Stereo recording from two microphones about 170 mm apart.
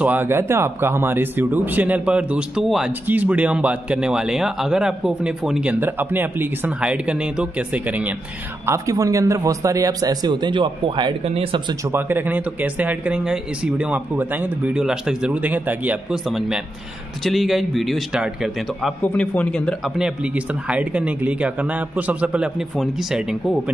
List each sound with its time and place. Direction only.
0.0 s speech: 10° right (ahead or behind)
8.6 s a man's voice: 20° right (ahead or behind)
11.9 s a man's voice: 10° right (ahead or behind); by 19.7 s 5° left (ahead or behind)
20.0 s speech: 5° right (ahead or behind)